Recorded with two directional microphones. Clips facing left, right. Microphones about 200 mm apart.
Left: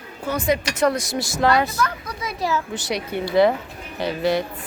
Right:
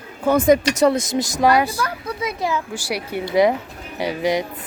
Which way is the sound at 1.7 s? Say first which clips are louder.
Even; 30° right (ahead or behind).